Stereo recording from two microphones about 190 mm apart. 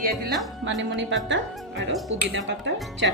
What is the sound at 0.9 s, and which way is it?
Speech, 70° right (ahead or behind).